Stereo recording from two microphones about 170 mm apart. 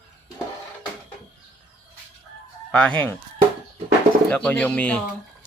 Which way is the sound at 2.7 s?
5° left (ahead or behind).